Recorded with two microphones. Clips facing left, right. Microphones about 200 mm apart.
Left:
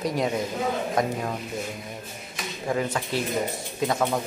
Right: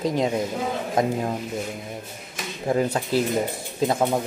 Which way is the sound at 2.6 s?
35° right (ahead or behind).